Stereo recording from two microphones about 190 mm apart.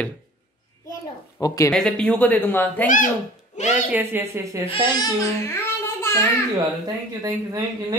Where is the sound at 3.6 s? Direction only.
35° left (ahead or behind).